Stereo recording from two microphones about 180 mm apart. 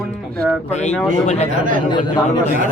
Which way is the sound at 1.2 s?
40° left (ahead or behind).